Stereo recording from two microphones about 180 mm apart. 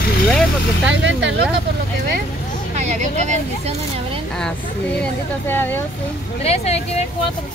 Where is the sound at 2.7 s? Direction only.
40° right (ahead or behind).